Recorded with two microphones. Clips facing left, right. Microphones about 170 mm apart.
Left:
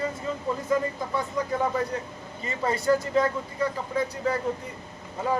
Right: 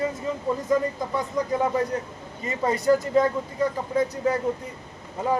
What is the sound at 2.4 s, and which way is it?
Speech, 20° right (ahead or behind).